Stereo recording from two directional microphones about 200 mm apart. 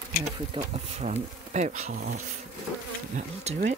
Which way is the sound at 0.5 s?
30° right (ahead or behind).